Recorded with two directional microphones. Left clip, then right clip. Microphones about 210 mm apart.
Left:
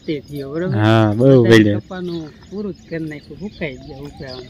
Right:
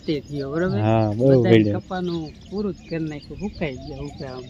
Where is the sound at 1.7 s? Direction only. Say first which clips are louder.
Left 1 dB; 15° right (ahead or behind).